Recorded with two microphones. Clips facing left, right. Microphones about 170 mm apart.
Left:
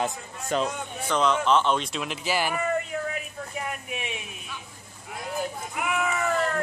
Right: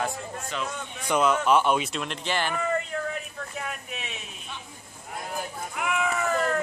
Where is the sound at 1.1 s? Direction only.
10° right (ahead or behind); by 4.1 s 15° left (ahead or behind).